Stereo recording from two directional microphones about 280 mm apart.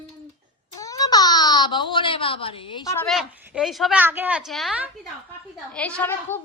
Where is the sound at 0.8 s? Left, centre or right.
Centre.